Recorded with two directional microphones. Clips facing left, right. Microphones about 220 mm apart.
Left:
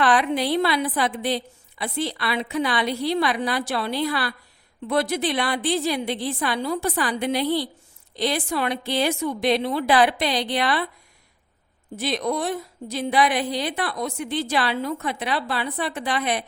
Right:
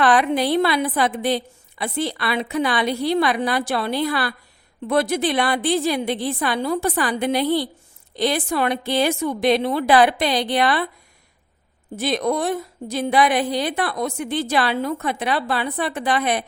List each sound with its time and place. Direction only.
0.0 s a woman's voice: 50° right (ahead or behind)
11.9 s a woman's voice: 50° right (ahead or behind)